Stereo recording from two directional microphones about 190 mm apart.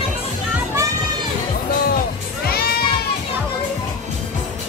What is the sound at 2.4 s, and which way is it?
Music, 55° left (ahead or behind).